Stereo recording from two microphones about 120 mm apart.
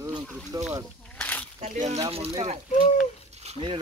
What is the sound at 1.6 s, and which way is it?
Speech, 75° right (ahead or behind).